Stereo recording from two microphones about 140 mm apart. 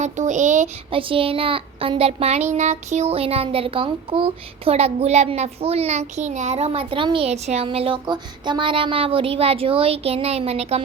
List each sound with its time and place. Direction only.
0.0 s child singing: 60° right (ahead or behind)
0.9 s a child's voice: 40° right (ahead or behind)